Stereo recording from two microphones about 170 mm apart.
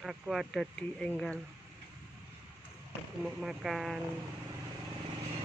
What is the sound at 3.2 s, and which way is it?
Speech, 5° right (ahead or behind).